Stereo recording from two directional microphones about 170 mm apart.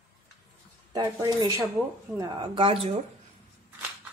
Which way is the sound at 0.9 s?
25° right (ahead or behind).